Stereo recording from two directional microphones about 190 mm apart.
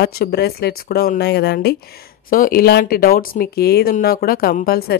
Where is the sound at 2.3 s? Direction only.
50° left (ahead or behind).